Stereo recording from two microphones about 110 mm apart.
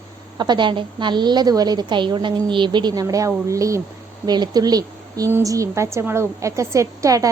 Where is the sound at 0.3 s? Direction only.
40° right (ahead or behind).